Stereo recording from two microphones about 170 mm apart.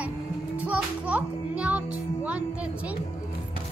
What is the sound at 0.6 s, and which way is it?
Music, 10° right (ahead or behind).